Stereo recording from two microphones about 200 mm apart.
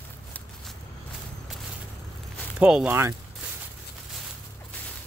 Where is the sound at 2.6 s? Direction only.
5° right (ahead or behind).